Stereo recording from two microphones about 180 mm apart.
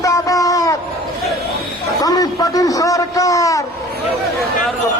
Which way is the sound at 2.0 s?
20° left (ahead or behind).